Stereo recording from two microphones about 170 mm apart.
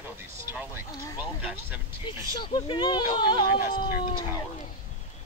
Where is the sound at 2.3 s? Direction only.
30° left (ahead or behind).